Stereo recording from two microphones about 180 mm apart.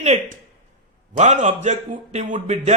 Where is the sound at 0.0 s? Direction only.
40° right (ahead or behind).